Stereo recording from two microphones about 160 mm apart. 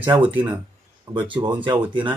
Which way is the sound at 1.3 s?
30° right (ahead or behind).